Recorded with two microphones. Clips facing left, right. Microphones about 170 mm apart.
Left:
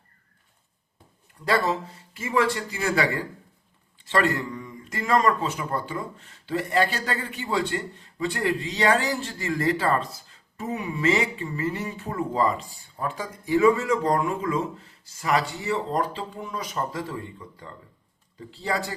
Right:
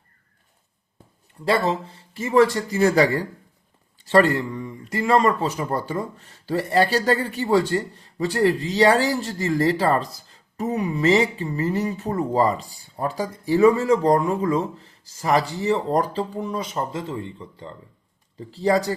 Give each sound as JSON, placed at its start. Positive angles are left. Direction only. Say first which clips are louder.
{"t": 1.5, "sound": "speech", "louder": "right 3 dB", "side_deg": -25}
{"t": 18.3, "sound": "speech", "louder": "right 8 dB", "side_deg": -35}